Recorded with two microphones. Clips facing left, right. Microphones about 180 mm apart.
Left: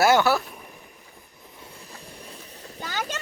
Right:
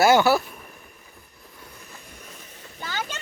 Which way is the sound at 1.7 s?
30° left (ahead or behind).